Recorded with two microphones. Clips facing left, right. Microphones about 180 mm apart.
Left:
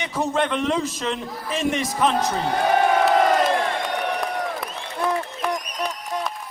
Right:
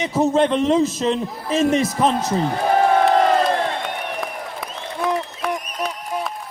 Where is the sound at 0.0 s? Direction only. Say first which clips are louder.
Right 6 dB; 30° right (ahead or behind).